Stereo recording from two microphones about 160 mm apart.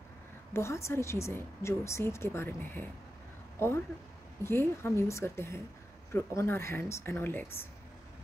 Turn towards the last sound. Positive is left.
turn(degrees=15)  # may be behind; listen again after turning